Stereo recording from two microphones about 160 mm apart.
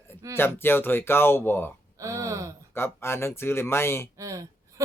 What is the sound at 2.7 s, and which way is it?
Speech, 15° left (ahead or behind).